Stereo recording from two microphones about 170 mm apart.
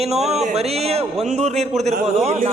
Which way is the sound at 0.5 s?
40° right (ahead or behind).